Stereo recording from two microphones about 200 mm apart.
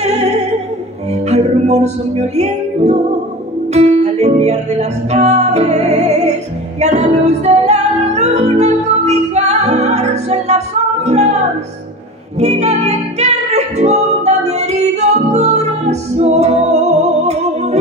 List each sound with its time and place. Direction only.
0.0 s opera: 35° right (ahead or behind)
1.3 s music: 35° right (ahead or behind)
12.4 s music: 35° right (ahead or behind)